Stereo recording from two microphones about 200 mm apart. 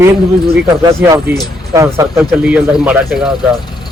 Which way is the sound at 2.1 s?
5° right (ahead or behind).